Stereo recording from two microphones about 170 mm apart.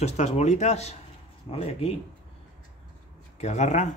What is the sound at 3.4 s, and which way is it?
Speech, 40° left (ahead or behind).